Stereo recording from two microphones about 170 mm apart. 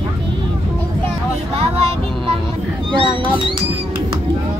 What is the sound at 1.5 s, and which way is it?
Child singing, 35° right (ahead or behind).